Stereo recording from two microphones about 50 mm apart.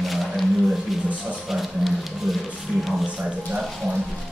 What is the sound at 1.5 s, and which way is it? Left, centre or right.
Speech, centre.